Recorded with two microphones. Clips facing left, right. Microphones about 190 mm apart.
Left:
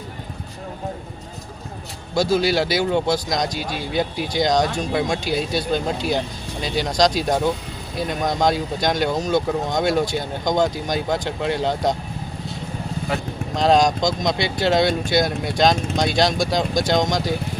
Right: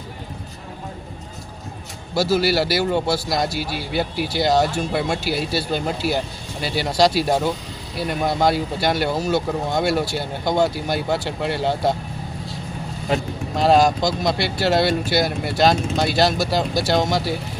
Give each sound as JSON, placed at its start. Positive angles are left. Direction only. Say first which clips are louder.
{"t": 2.1, "sound": "a man's voice", "louder": "even", "side_deg": -5}
{"t": 13.6, "sound": "speech", "louder": "right 1 dB", "side_deg": -5}